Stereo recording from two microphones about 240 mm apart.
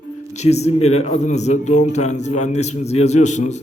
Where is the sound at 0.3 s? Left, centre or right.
Left.